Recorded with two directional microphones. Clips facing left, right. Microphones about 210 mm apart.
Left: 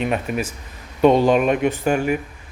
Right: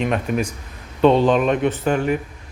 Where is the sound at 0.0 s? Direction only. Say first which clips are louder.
Right 1 dB; 5° left (ahead or behind).